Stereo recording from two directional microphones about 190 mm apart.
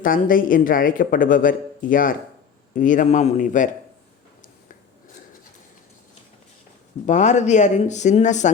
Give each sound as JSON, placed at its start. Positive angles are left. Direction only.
{"t": 0.0, "sound": "speech", "side_deg": 45}
{"t": 7.0, "sound": "speech", "side_deg": 40}